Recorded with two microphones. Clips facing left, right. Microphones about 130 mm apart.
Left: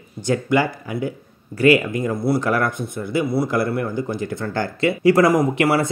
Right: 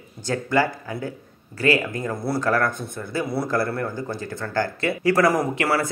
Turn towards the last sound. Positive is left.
turn(degrees=20)  # may be behind; listen again after turning